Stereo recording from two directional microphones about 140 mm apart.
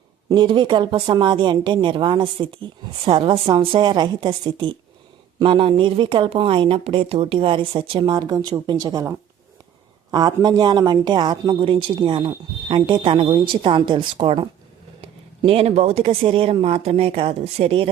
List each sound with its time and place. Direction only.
0.3 s speech: 35° right (ahead or behind)